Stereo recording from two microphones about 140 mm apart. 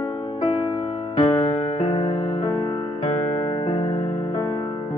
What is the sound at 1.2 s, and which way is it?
Music, 45° left (ahead or behind).